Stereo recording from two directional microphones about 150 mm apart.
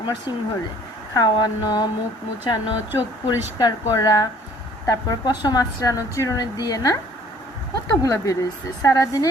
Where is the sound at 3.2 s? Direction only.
25° left (ahead or behind).